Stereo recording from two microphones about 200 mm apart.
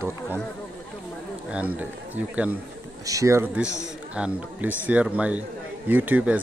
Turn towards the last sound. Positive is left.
turn(degrees=-10)  # may be behind; listen again after turning